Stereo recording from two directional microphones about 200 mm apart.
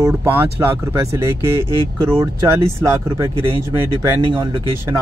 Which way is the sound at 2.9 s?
15° right (ahead or behind).